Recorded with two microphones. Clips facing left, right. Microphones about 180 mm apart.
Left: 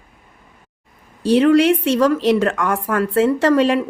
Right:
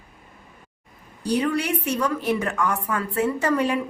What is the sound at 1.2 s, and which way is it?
A woman's voice, 90° left.